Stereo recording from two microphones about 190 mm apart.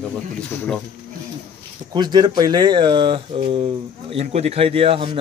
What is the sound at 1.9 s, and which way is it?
Speech, 20° right (ahead or behind).